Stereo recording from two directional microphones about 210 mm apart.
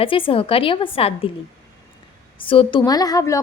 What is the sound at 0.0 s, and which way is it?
A woman's voice, 25° left (ahead or behind).